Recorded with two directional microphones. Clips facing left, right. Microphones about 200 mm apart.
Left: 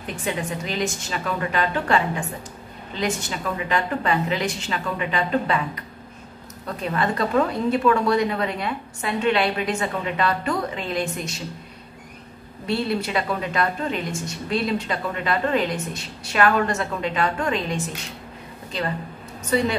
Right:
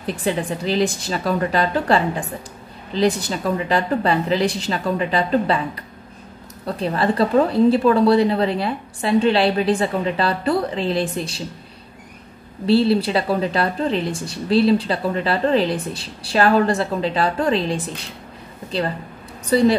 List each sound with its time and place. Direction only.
0.0 s a woman's voice: 35° right (ahead or behind)
6.6 s a woman's voice: 30° right (ahead or behind)
12.6 s a woman's voice: 30° right (ahead or behind)